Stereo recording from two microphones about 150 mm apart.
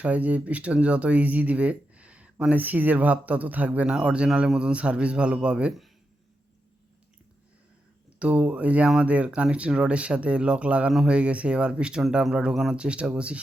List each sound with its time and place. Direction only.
0.0 s speech: 10° right (ahead or behind)
8.2 s speech: 10° right (ahead or behind)